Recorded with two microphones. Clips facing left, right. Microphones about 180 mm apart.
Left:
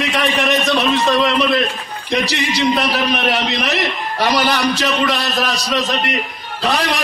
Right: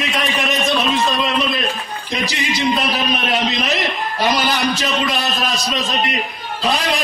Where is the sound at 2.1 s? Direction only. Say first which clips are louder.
Left 4 dB; 65° left (ahead or behind).